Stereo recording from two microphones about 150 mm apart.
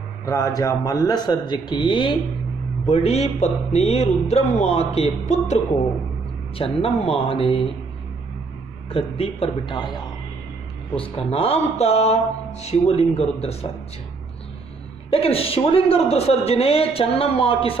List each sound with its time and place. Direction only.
0.2 s speech: 20° left (ahead or behind)
2.9 s speech: 45° left (ahead or behind)
6.6 s a woman's voice: 40° left (ahead or behind)
8.9 s a woman's voice: 40° left (ahead or behind)
11.0 s speech: 40° left (ahead or behind)
15.0 s a woman's voice: 40° left (ahead or behind)